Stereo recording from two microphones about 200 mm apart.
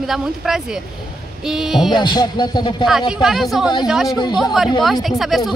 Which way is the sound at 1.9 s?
20° left (ahead or behind).